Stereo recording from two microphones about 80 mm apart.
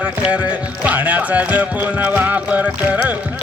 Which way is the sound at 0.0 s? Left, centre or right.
Centre.